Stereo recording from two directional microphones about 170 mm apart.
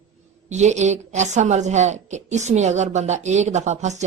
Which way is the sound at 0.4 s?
45° right (ahead or behind).